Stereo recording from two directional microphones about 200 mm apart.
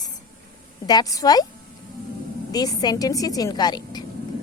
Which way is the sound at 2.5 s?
20° left (ahead or behind).